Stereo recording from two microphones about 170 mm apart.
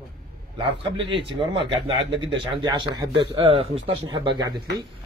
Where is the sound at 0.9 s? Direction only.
30° right (ahead or behind).